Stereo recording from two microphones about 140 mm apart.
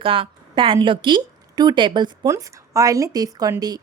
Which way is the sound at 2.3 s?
20° right (ahead or behind).